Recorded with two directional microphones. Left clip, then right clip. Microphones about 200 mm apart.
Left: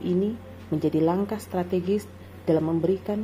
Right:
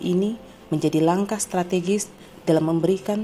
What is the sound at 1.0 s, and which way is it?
A woman's voice, 25° right (ahead or behind).